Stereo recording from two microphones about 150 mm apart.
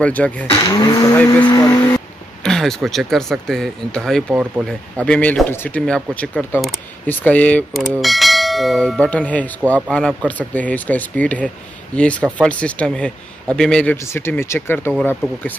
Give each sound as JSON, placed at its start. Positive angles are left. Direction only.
{"t": 0.0, "sound": "speech", "side_deg": 10}
{"t": 0.6, "sound": "speech", "side_deg": 25}
{"t": 2.4, "sound": "speech", "side_deg": 5}
{"t": 7.9, "sound": "bell", "side_deg": 0}
{"t": 9.8, "sound": "speech", "side_deg": 5}
{"t": 13.9, "sound": "speech", "side_deg": 15}